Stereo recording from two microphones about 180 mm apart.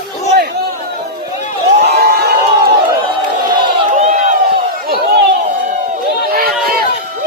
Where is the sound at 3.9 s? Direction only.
45° right (ahead or behind).